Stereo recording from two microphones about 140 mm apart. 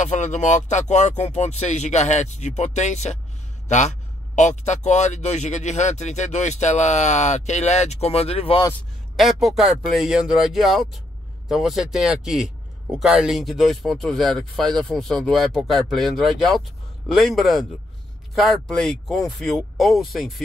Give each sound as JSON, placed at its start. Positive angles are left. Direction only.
{"t": 0.0, "sound": "a man's voice", "side_deg": 60}
{"t": 9.1, "sound": "speech", "side_deg": 0}